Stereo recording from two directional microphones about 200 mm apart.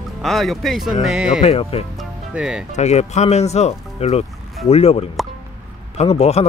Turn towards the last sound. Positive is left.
turn(degrees=30)  # may be behind; listen again after turning